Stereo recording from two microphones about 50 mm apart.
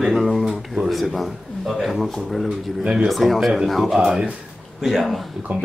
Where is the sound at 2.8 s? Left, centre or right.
Centre.